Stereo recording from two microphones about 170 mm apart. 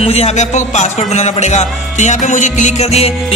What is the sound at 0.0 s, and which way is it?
Music, 40° left (ahead or behind).